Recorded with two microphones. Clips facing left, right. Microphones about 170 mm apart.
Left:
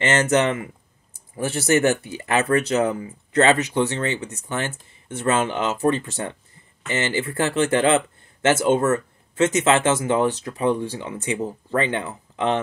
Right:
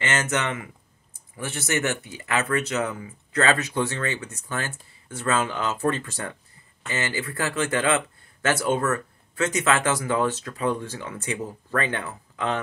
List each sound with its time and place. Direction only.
0.0 s speech: 30° left (ahead or behind)